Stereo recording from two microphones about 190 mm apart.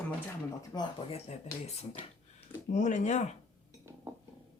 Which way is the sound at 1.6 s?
35° left (ahead or behind).